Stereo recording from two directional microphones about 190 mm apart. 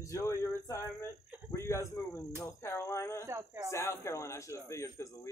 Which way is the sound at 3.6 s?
15° left (ahead or behind).